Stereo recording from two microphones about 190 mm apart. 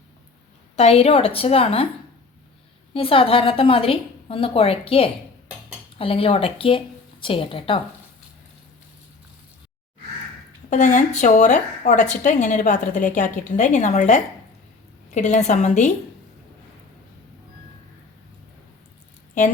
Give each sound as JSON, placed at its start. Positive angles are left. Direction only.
{"t": 0.8, "sound": "a woman's voice", "side_deg": 35}
{"t": 2.9, "sound": "a woman's voice", "side_deg": 30}
{"t": 10.7, "sound": "a woman's voice", "side_deg": 40}